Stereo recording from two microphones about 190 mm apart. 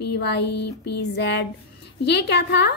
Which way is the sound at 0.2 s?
60° left (ahead or behind).